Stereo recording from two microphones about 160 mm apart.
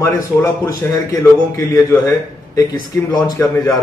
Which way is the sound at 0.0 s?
20° left (ahead or behind).